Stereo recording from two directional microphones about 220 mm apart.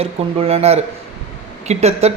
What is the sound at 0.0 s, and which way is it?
Speech, 25° right (ahead or behind).